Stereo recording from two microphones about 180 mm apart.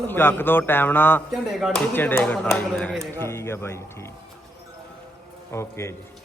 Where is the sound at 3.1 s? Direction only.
15° left (ahead or behind).